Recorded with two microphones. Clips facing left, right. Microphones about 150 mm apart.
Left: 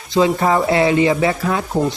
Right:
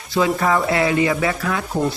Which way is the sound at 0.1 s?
25° left (ahead or behind).